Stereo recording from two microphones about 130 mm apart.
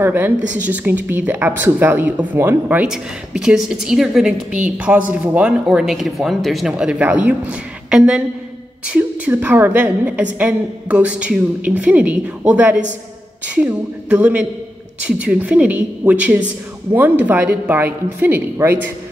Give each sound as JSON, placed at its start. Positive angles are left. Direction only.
{"t": 0.0, "sound": "a woman's voice", "side_deg": -15}